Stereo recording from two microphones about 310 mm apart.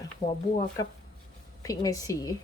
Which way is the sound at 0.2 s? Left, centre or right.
Centre.